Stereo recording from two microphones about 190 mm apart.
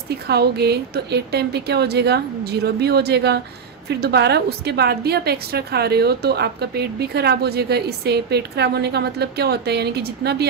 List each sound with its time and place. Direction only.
0.3 s a woman's voice: 60° right (ahead or behind)